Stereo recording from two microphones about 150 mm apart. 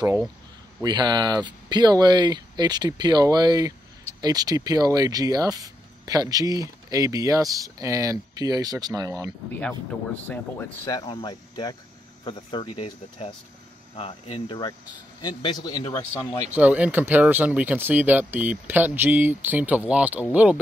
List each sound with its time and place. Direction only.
0.8 s speech: 30° right (ahead or behind)
9.5 s speech: 10° left (ahead or behind)
10.9 s a man's voice: 30° left (ahead or behind)
16.5 s speech: 10° right (ahead or behind)